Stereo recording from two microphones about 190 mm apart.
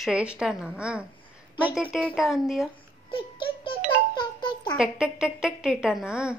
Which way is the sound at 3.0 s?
25° left (ahead or behind).